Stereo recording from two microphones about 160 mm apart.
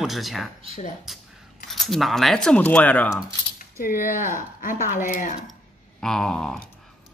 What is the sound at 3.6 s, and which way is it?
Speech, 60° left (ahead or behind).